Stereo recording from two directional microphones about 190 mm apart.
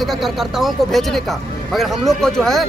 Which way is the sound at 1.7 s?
Centre (ahead or behind).